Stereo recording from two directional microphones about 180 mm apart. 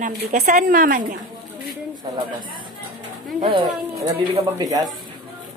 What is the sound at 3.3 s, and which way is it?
Speech, 30° right (ahead or behind).